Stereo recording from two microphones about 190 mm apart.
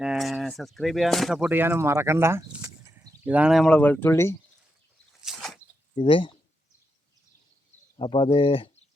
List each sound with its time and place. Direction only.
0.0 s speech: centre (ahead or behind); by 3.2 s 20° right (ahead or behind)
3.2 s speech: 5° right (ahead or behind); by 4.4 s 15° left (ahead or behind)
5.2 s a sound: centre (ahead or behind)
6.0 s speech: 25° left (ahead or behind)
7.9 s speech: 25° left (ahead or behind)